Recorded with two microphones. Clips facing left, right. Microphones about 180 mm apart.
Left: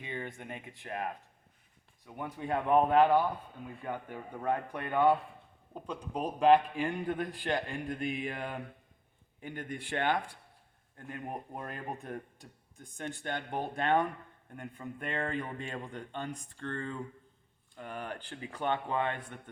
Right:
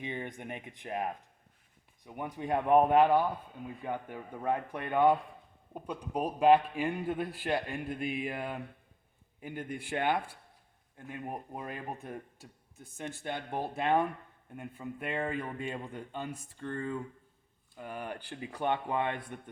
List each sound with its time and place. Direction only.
0.0 s a man's voice: 15° right (ahead or behind)
2.0 s a man's voice: 15° right (ahead or behind)